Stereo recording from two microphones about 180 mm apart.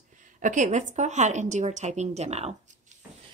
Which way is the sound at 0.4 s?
45° right (ahead or behind).